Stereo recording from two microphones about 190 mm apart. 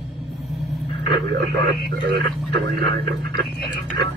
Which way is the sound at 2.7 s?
55° right (ahead or behind).